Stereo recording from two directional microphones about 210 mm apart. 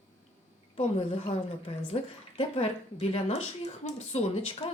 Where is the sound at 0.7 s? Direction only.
25° left (ahead or behind).